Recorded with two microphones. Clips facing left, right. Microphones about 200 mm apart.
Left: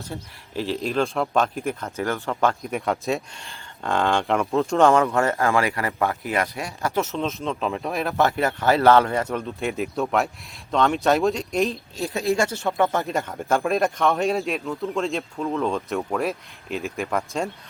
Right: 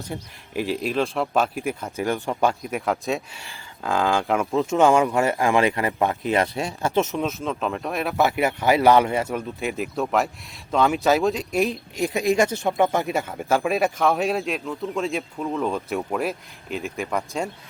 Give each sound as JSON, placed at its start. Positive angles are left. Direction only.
{"t": 0.1, "sound": "speech", "side_deg": -15}
{"t": 2.6, "sound": "speech", "side_deg": 0}
{"t": 7.2, "sound": "speech", "side_deg": -5}
{"t": 11.7, "sound": "speech", "side_deg": -15}